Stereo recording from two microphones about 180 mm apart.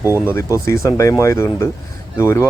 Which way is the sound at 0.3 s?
15° left (ahead or behind).